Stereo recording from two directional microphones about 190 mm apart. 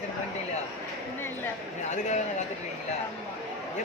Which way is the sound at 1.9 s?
40° left (ahead or behind).